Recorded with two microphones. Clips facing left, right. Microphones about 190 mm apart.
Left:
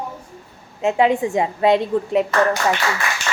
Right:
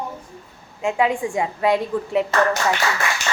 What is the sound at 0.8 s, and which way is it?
A woman's voice, 25° left (ahead or behind).